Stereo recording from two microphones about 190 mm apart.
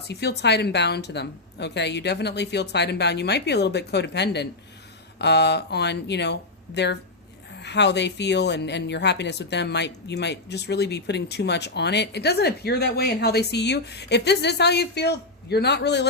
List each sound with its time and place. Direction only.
0.1 s speech: 60° left (ahead or behind)
7.6 s speech: 65° left (ahead or behind)